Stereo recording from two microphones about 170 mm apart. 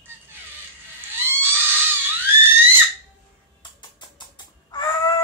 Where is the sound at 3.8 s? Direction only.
25° left (ahead or behind).